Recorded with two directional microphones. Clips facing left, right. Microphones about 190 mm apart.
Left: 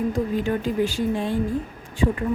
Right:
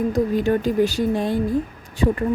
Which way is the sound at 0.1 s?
40° right (ahead or behind).